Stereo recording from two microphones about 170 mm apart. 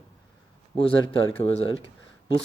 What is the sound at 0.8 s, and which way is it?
Speech, 30° left (ahead or behind).